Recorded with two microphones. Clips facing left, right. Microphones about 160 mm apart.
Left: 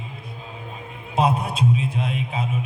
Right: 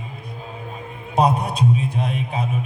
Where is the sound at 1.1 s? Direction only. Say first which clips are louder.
Right 2 dB; 40° right (ahead or behind).